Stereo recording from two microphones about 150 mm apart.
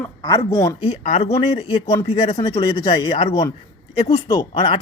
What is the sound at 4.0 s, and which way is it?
Speech, 45° left (ahead or behind).